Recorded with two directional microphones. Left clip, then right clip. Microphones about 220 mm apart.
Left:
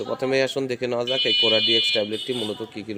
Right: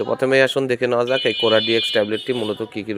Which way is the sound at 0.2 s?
10° right (ahead or behind).